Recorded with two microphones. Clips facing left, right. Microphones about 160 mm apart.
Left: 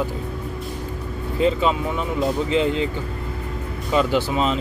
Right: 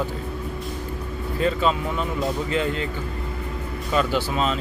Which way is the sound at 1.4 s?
15° left (ahead or behind).